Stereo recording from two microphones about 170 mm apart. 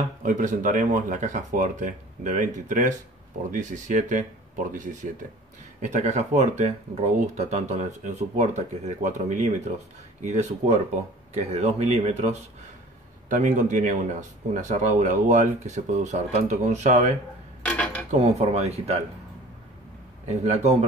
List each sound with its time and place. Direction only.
0.2 s speech: 50° right (ahead or behind)
5.8 s speech: 45° right (ahead or behind)
17.6 s cutlery: 10° left (ahead or behind)
18.1 s speech: 40° right (ahead or behind)
20.2 s speech: 40° right (ahead or behind)